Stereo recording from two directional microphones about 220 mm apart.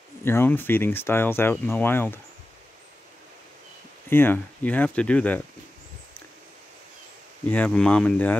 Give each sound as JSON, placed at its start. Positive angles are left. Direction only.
{"t": 0.2, "sound": "speech", "side_deg": 10}
{"t": 4.1, "sound": "speech", "side_deg": 10}
{"t": 7.4, "sound": "speech", "side_deg": 5}